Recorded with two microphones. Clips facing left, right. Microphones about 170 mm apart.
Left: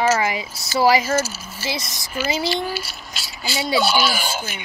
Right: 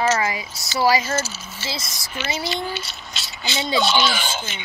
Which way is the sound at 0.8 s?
25° left (ahead or behind).